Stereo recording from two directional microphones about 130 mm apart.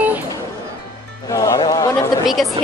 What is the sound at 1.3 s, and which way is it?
Speech, 25° left (ahead or behind).